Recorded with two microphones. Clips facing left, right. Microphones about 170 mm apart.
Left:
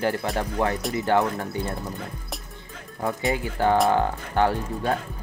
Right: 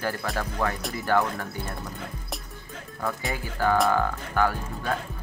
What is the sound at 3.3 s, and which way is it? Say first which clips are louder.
Speech: left 2 dB; 25° left (ahead or behind).